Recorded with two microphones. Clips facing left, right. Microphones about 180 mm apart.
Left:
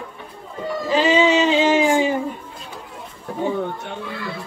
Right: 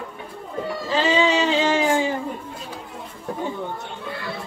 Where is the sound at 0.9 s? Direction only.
15° left (ahead or behind).